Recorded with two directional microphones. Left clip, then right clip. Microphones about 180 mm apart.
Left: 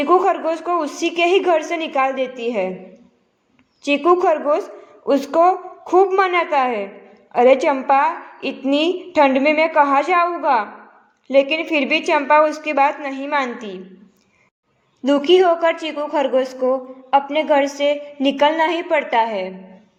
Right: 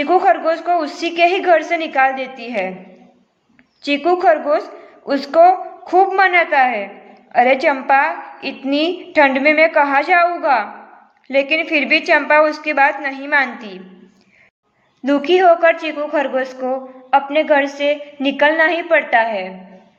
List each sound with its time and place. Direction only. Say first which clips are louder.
0.0 s a woman's voice: right 2 dB; 35° left (ahead or behind)
3.8 s a woman's voice: right 1 dB; 35° left (ahead or behind)
15.0 s a woman's voice: right 2 dB; 35° left (ahead or behind)